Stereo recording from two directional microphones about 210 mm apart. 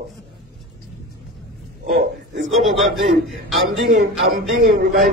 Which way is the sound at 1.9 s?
45° right (ahead or behind).